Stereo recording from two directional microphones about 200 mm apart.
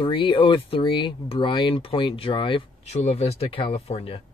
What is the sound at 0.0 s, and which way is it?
Speech, 25° left (ahead or behind).